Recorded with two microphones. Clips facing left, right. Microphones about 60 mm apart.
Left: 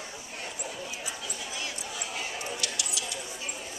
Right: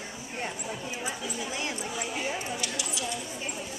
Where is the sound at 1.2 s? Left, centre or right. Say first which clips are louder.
Right 4 dB; centre.